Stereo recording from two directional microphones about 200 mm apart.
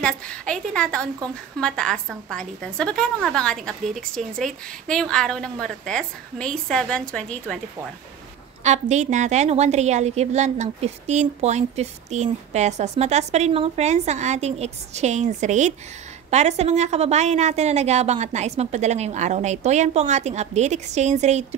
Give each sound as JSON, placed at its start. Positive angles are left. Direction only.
{"t": 0.0, "sound": "a woman's voice", "side_deg": 5}
{"t": 8.6, "sound": "a woman's voice", "side_deg": -35}